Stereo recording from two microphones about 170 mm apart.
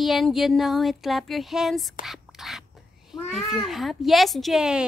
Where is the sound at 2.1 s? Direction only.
Centre (ahead or behind).